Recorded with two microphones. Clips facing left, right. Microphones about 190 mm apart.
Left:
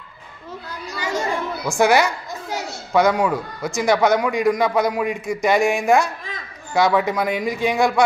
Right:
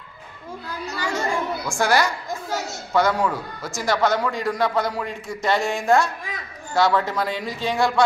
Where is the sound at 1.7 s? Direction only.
20° left (ahead or behind).